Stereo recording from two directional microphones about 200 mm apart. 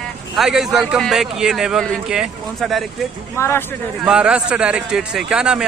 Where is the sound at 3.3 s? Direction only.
15° left (ahead or behind).